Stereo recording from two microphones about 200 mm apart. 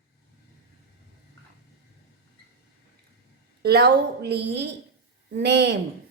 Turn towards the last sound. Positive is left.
turn(degrees=-60)  # may be behind; listen again after turning